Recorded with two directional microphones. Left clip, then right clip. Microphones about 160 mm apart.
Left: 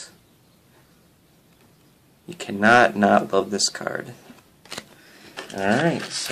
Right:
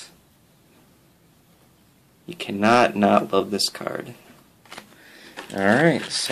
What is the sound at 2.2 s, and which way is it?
Speech, 15° right (ahead or behind).